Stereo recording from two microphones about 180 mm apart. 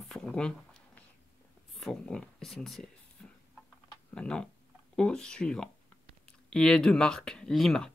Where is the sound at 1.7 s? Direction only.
Centre (ahead or behind).